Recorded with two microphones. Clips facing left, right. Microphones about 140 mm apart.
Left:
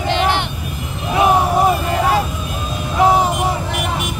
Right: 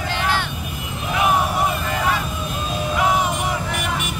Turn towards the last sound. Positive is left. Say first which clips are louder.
# left 6 dB
turn(degrees=35)  # may be behind; listen again after turning